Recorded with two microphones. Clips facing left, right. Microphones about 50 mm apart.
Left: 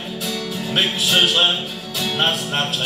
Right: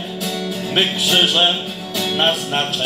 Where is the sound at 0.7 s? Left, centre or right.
Centre.